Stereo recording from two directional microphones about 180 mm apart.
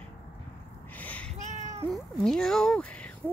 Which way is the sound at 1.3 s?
45° right (ahead or behind).